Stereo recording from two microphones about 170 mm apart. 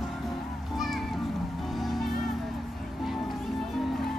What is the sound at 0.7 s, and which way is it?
Music, centre (ahead or behind).